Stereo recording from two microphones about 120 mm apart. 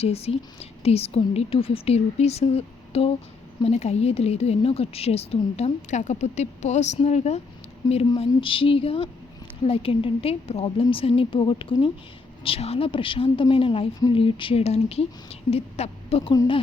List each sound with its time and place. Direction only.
0.0 s a woman's voice: 55° left (ahead or behind)
3.6 s a woman's voice: 65° left (ahead or behind)
7.8 s a woman's voice: 35° left (ahead or behind); by 16.3 s 55° left (ahead or behind)